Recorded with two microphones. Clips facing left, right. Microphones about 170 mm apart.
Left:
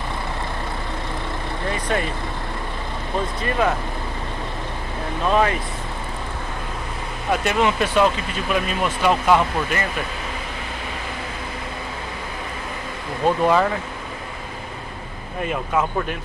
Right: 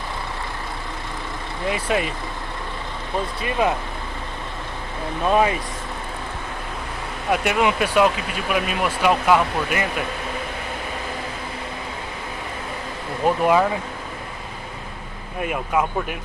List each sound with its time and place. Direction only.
1.7 s speech: 10° right (ahead or behind)
3.4 s speech: 15° right (ahead or behind)
5.3 s speech: 15° right (ahead or behind)
7.2 s speech: 10° right (ahead or behind)
13.2 s speech: 10° right (ahead or behind)
15.4 s speech: 10° right (ahead or behind)